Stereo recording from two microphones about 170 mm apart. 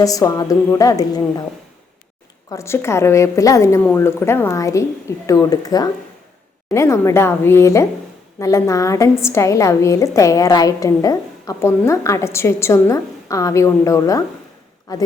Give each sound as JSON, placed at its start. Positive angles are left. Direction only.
{"t": 0.0, "sound": "a woman's voice", "side_deg": 20}
{"t": 2.5, "sound": "a woman's voice", "side_deg": 15}